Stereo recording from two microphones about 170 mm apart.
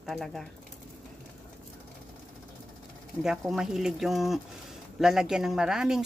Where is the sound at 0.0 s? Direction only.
Centre (ahead or behind).